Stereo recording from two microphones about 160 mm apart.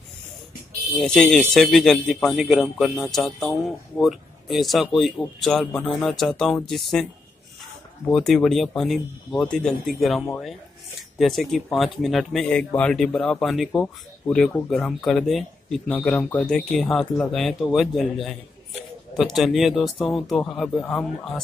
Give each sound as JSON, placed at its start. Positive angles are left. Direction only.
{"t": 0.9, "sound": "speech", "side_deg": 5}
{"t": 8.1, "sound": "speech", "side_deg": 5}